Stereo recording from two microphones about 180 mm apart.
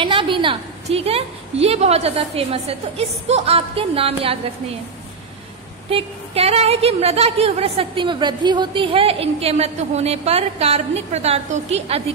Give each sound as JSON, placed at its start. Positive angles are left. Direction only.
{"t": 0.0, "sound": "a woman's voice", "side_deg": -30}
{"t": 5.9, "sound": "a woman's voice", "side_deg": -35}